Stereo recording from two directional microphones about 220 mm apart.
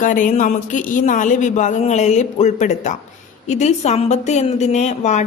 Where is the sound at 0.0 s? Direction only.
35° left (ahead or behind).